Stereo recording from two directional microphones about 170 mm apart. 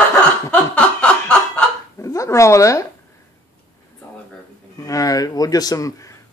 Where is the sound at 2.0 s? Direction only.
20° left (ahead or behind).